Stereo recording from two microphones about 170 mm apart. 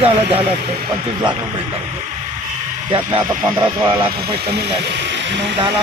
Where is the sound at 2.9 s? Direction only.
25° right (ahead or behind).